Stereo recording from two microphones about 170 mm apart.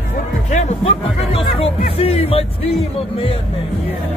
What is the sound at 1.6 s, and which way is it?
Speech, 35° left (ahead or behind).